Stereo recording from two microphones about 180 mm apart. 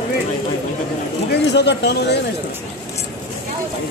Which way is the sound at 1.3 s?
75° left (ahead or behind).